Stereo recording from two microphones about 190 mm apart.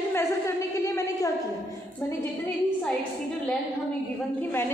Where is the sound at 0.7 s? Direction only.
15° left (ahead or behind).